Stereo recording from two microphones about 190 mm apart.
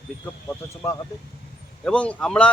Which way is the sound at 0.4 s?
15° left (ahead or behind).